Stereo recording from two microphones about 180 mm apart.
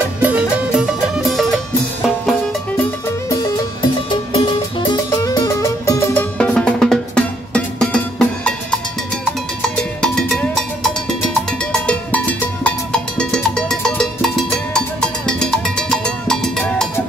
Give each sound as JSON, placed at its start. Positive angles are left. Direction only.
{"t": 0.2, "sound": "music", "side_deg": -10}
{"t": 3.3, "sound": "music", "side_deg": 20}
{"t": 6.3, "sound": "drum", "side_deg": 5}
{"t": 9.8, "sound": "music", "side_deg": 5}
{"t": 15.2, "sound": "cowbell", "side_deg": 5}